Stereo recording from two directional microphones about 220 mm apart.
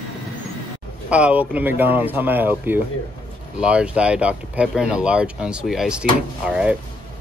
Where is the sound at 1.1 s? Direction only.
5° right (ahead or behind).